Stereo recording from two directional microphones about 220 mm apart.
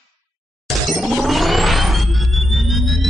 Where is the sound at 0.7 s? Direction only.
Centre (ahead or behind).